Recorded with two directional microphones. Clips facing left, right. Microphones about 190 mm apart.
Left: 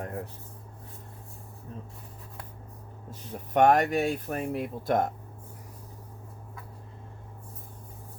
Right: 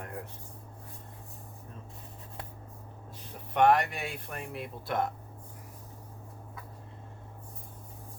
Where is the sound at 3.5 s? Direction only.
45° left (ahead or behind).